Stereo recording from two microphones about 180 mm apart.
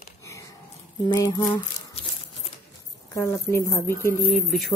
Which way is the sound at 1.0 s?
25° left (ahead or behind).